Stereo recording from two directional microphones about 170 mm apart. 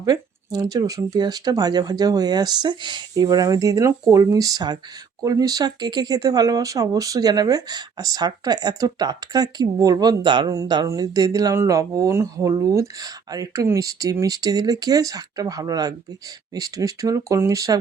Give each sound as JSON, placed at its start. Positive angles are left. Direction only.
{"t": 0.0, "sound": "speech", "side_deg": -20}